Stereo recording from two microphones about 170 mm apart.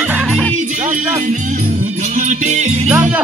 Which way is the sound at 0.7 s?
45° right (ahead or behind).